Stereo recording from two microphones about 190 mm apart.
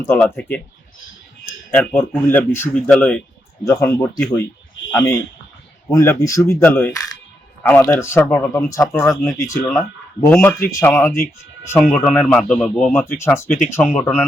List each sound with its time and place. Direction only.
0.0 s speech: 10° left (ahead or behind)
1.7 s speech: 10° left (ahead or behind)
11.8 s speech: centre (ahead or behind)